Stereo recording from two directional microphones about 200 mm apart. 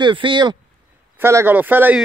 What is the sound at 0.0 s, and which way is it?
Speech, 25° right (ahead or behind).